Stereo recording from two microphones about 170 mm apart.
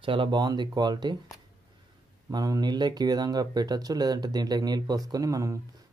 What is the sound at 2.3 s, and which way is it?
Speech, 25° right (ahead or behind).